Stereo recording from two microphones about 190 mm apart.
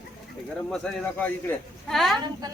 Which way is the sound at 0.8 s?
5° left (ahead or behind).